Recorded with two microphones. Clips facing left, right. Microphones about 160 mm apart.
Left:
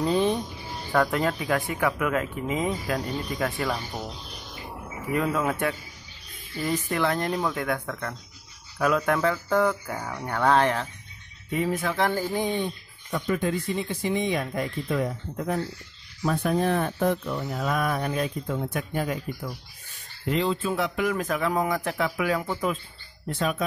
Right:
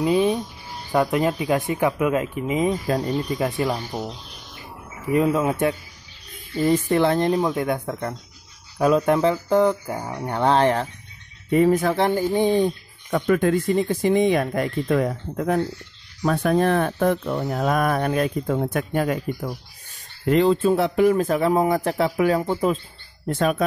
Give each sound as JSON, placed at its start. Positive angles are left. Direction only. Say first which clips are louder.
{"t": 0.0, "sound": "speech", "louder": "right 4 dB", "side_deg": -10}
{"t": 5.1, "sound": "speech", "louder": "right 6 dB", "side_deg": -20}
{"t": 6.9, "sound": "speech", "louder": "right 7 dB", "side_deg": -30}
{"t": 11.5, "sound": "speech", "louder": "right 9 dB", "side_deg": -45}
{"t": 12.1, "sound": "speech", "louder": "right 7 dB", "side_deg": -20}
{"t": 13.1, "sound": "speech", "louder": "right 7 dB", "side_deg": -65}
{"t": 20.2, "sound": "speech", "louder": "right 8 dB", "side_deg": -50}
{"t": 20.7, "sound": "speech", "louder": "right 8 dB", "side_deg": -35}
{"t": 23.2, "sound": "speech", "louder": "right 6 dB", "side_deg": -50}